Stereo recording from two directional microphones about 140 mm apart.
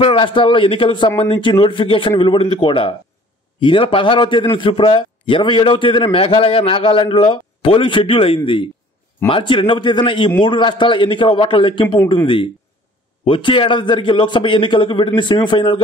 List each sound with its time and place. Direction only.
0.0 s a man's voice: 40° left (ahead or behind)
13.2 s a man's voice: 35° left (ahead or behind)